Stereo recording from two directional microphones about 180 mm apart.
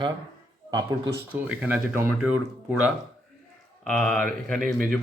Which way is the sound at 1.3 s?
10° right (ahead or behind).